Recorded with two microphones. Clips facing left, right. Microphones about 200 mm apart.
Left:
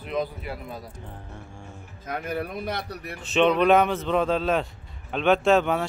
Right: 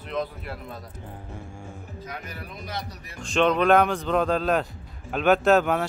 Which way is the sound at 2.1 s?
55° left (ahead or behind).